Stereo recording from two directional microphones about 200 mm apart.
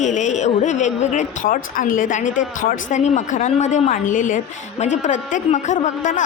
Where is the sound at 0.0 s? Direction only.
35° left (ahead or behind).